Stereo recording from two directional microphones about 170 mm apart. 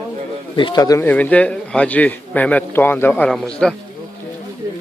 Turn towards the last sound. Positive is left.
turn(degrees=5)  # may be behind; listen again after turning